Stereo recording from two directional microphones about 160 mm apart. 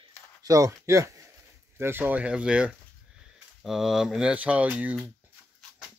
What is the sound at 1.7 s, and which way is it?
Speech, 15° right (ahead or behind).